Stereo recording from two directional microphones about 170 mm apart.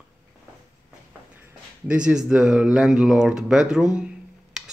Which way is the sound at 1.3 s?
10° right (ahead or behind).